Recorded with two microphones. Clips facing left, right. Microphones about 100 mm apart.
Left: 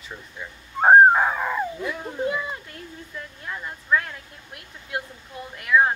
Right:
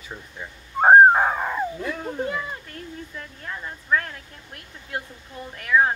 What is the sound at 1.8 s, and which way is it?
Speech, 10° left (ahead or behind).